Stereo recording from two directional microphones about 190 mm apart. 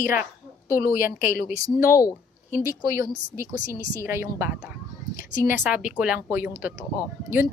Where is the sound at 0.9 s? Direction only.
45° left (ahead or behind).